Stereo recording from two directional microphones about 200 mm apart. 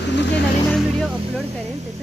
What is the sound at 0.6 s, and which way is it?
Music, centre (ahead or behind).